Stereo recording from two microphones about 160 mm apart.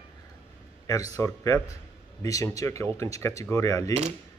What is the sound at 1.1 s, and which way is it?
Speech, 20° left (ahead or behind).